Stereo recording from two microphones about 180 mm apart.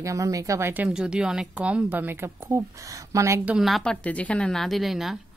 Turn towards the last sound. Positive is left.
turn(degrees=0)  # may be behind; listen again after turning